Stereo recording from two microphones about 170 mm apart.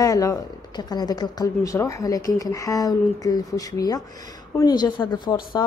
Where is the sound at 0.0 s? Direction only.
20° left (ahead or behind).